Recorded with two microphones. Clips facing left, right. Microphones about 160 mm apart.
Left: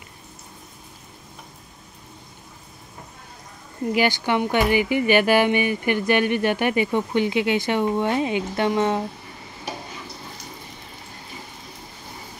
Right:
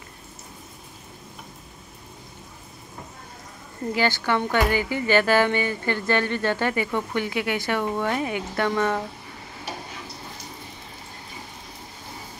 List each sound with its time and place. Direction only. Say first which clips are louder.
3.9 s speech: left 2 dB; 15° left (ahead or behind)